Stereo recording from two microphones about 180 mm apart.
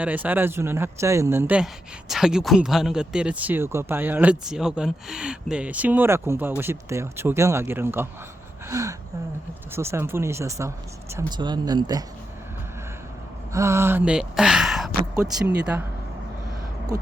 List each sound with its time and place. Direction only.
0.0 s speech: 10° right (ahead or behind)
8.6 s gasp: 15° right (ahead or behind)
9.7 s speech: 15° right (ahead or behind)
13.5 s speech: 15° right (ahead or behind)